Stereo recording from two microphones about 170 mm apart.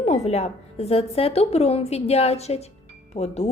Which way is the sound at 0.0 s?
40° left (ahead or behind).